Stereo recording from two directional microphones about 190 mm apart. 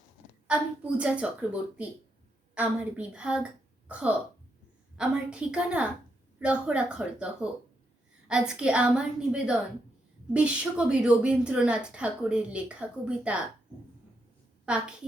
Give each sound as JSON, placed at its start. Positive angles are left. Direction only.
{"t": 0.4, "sound": "a woman's voice", "side_deg": -5}
{"t": 14.6, "sound": "a woman's voice", "side_deg": -5}